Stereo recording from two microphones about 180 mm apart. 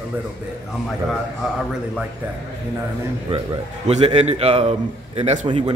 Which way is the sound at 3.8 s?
40° right (ahead or behind).